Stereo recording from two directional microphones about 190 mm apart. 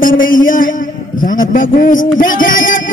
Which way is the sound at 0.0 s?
45° left (ahead or behind).